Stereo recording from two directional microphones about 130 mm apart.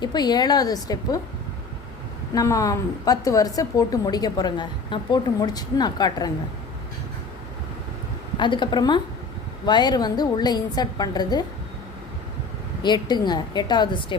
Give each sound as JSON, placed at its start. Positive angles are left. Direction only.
{"t": 0.0, "sound": "a woman's voice", "side_deg": 35}
{"t": 2.3, "sound": "a woman's voice", "side_deg": 25}
{"t": 8.4, "sound": "a woman's voice", "side_deg": 40}
{"t": 12.8, "sound": "a woman's voice", "side_deg": 35}